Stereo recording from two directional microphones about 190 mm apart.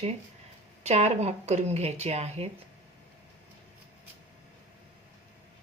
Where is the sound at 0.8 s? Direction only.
35° right (ahead or behind).